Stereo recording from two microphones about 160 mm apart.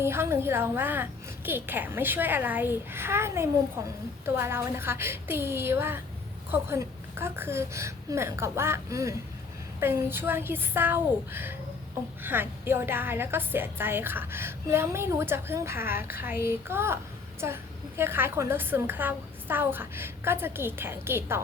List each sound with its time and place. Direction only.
0.0 s a woman's voice: 15° right (ahead or behind)